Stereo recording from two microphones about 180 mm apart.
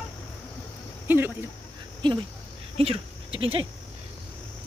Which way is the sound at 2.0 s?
25° right (ahead or behind).